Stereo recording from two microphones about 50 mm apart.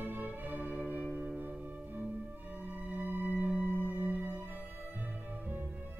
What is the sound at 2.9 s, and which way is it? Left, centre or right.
Music, right.